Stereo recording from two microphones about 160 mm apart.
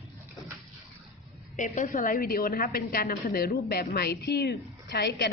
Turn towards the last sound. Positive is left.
turn(degrees=90)